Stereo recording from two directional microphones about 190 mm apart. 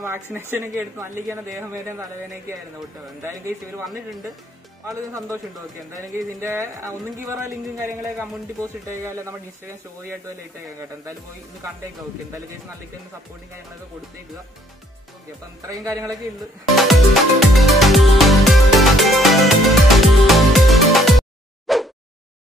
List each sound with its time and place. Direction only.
0.0 s speech: 15° right (ahead or behind)
4.8 s speech: 20° right (ahead or behind)
15.6 s speech: 15° right (ahead or behind)
16.7 s music: centre (ahead or behind)
21.7 s a sound: centre (ahead or behind)